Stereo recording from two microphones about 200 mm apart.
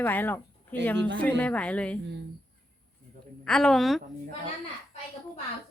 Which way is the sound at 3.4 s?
5° left (ahead or behind).